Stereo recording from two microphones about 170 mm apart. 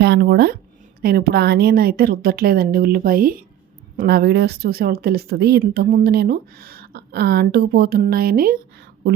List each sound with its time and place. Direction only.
0.0 s speech: 70° right (ahead or behind)